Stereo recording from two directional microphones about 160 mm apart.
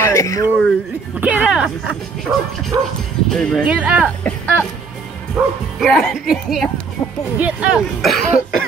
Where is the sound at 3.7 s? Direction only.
10° right (ahead or behind).